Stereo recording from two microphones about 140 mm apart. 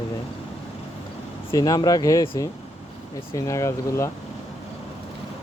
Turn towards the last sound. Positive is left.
turn(degrees=20)  # may be behind; listen again after turning